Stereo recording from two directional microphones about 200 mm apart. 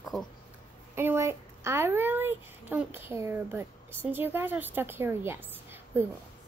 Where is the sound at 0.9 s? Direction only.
10° right (ahead or behind).